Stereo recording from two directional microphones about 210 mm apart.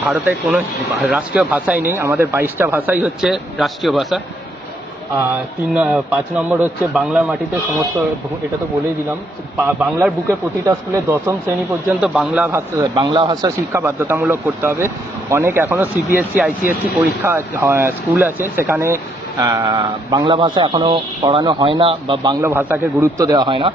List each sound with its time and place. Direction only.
0.1 s a man's voice: 5° right (ahead or behind)
5.7 s a man's voice: 5° right (ahead or behind)
9.6 s a man's voice: 10° right (ahead or behind)